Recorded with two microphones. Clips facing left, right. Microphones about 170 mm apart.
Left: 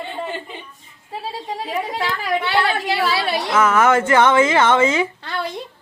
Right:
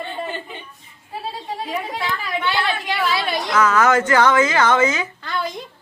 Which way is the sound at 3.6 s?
25° left (ahead or behind).